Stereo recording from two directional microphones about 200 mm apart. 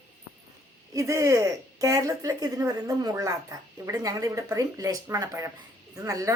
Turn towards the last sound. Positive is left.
turn(degrees=-15)  # may be behind; listen again after turning